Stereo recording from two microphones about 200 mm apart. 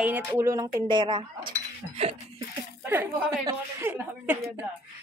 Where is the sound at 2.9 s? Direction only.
10° right (ahead or behind).